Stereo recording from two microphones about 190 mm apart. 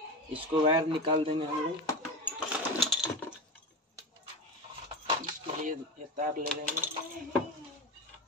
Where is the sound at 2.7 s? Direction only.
Centre (ahead or behind).